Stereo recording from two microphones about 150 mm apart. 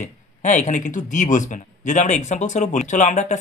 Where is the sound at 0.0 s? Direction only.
55° left (ahead or behind).